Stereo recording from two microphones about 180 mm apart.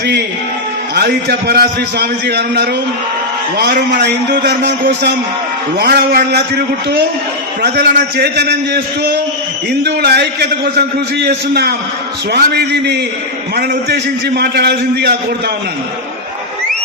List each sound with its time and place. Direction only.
0.9 s a man's voice: 60° right (ahead or behind)
7.6 s a man's voice: 65° right (ahead or behind)